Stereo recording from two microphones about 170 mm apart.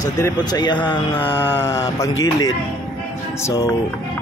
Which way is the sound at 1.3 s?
15° left (ahead or behind).